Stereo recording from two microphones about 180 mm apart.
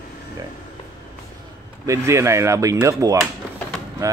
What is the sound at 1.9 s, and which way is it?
Speech, 15° right (ahead or behind).